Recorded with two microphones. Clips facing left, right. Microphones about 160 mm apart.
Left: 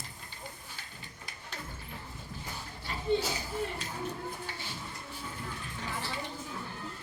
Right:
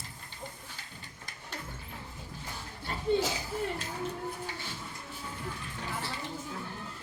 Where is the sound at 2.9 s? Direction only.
45° right (ahead or behind).